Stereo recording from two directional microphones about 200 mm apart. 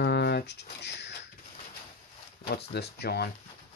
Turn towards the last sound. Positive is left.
turn(degrees=55)  # may be behind; listen again after turning